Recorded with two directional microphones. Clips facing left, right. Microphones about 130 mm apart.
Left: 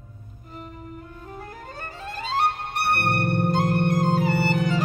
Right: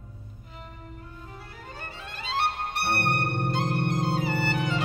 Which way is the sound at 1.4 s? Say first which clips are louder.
Left 6 dB; 40° left (ahead or behind).